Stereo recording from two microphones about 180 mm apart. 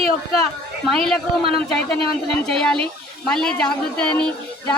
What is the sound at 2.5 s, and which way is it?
A woman's voice, 5° left (ahead or behind).